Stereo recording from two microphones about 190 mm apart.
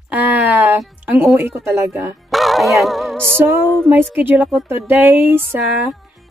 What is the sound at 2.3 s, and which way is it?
Music, centre (ahead or behind).